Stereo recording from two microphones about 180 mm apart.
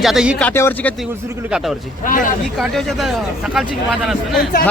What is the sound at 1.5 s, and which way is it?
Speech, 5° right (ahead or behind).